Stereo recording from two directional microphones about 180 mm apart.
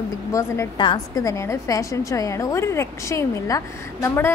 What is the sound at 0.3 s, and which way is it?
A woman's voice, 15° left (ahead or behind).